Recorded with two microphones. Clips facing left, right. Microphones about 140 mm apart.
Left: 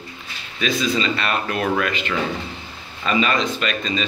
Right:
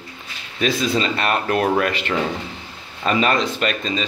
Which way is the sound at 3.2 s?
50° right (ahead or behind).